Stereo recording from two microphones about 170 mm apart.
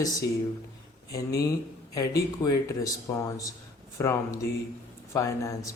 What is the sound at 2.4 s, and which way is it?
Speech, 20° left (ahead or behind).